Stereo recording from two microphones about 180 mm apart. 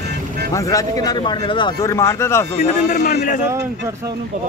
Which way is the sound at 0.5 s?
20° left (ahead or behind).